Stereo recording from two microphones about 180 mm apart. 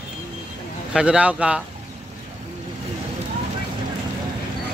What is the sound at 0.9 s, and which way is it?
Speech, 5° right (ahead or behind).